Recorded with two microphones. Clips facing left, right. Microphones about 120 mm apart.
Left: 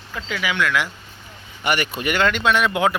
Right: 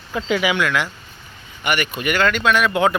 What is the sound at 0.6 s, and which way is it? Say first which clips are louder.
Speech: right 1 dB; 5° left (ahead or behind).